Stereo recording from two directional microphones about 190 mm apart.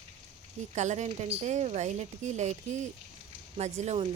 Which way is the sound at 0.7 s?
40° right (ahead or behind).